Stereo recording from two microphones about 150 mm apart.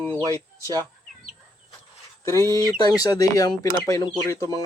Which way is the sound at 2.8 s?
25° left (ahead or behind).